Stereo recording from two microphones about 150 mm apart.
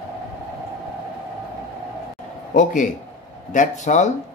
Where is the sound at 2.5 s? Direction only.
60° left (ahead or behind).